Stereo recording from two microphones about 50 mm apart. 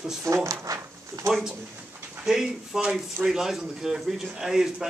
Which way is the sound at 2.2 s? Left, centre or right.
Centre.